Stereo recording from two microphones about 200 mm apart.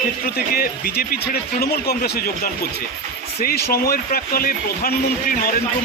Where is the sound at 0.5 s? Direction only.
50° left (ahead or behind).